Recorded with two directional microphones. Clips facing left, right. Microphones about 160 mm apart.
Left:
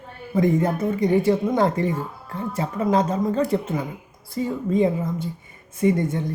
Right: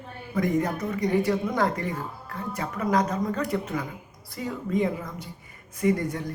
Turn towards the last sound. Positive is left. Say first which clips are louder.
# left 4 dB
turn(degrees=25)  # may be behind; listen again after turning